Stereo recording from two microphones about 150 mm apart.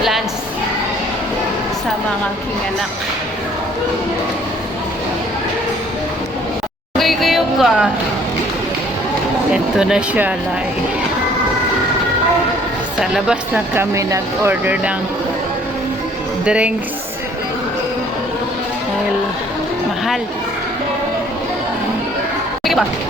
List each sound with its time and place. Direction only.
6.9 s a sound: centre (ahead or behind)
9.5 s speech: 5° right (ahead or behind)
13.0 s speech: 5° right (ahead or behind)
13.9 s speech: 20° right (ahead or behind)
16.5 s speech: 5° right (ahead or behind)